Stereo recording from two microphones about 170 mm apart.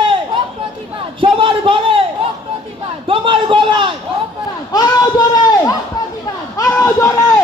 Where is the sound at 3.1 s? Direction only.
30° right (ahead or behind).